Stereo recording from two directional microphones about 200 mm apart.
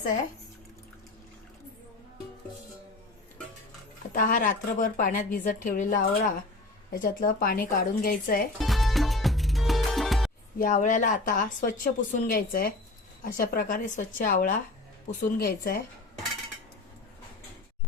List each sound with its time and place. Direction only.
4.1 s a woman's voice: 45° left (ahead or behind)
8.5 s music: centre (ahead or behind)
10.6 s a woman's voice: 40° left (ahead or behind)